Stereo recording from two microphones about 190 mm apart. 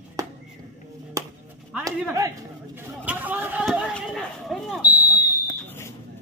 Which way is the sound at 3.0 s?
10° right (ahead or behind).